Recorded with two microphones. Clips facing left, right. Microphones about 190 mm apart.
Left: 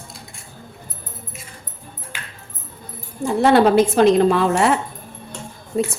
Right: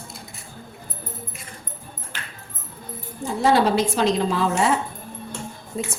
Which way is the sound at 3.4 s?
60° left (ahead or behind).